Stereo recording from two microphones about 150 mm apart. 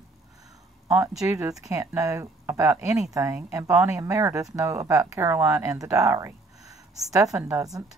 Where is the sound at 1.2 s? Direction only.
20° right (ahead or behind).